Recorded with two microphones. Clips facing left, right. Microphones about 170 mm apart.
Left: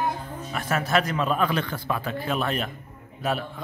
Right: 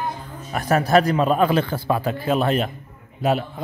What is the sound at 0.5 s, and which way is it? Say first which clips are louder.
A man's voice: right 7 dB; 40° right (ahead or behind).